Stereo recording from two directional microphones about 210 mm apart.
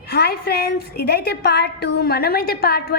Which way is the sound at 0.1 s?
50° left (ahead or behind).